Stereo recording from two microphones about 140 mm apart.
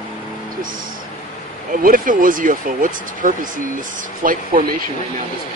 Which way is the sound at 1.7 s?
80° right.